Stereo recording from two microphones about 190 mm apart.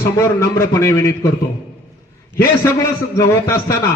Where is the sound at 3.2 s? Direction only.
15° left (ahead or behind).